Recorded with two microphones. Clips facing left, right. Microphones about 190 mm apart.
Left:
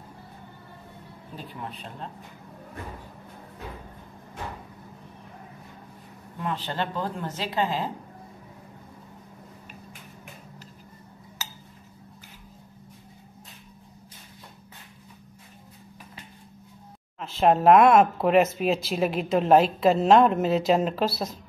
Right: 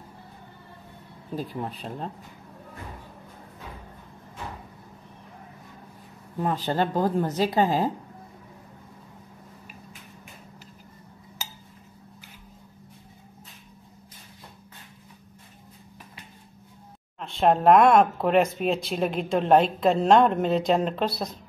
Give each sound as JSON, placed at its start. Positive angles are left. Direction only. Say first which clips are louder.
{"t": 1.3, "sound": "speech", "louder": "right 7 dB", "side_deg": -40}
{"t": 6.4, "sound": "speech", "louder": "right 5 dB", "side_deg": -40}
{"t": 17.2, "sound": "speech", "louder": "left 1 dB", "side_deg": 5}